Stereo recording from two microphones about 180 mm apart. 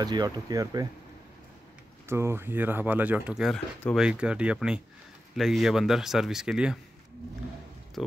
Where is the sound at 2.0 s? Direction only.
15° right (ahead or behind).